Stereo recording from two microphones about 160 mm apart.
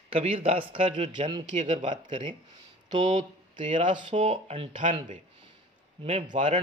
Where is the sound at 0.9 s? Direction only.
45° right (ahead or behind).